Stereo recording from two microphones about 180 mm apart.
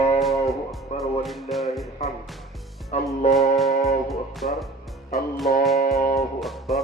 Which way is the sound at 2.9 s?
40° left (ahead or behind).